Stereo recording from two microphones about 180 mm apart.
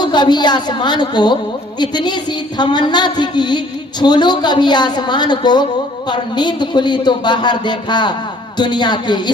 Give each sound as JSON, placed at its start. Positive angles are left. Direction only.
{"t": 0.0, "sound": "a man's voice", "side_deg": 25}